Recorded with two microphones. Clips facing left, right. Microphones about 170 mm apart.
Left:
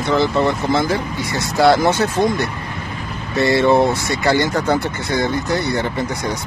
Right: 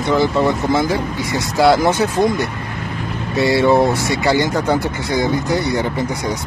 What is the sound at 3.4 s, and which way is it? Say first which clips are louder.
Speech: even; 10° right (ahead or behind).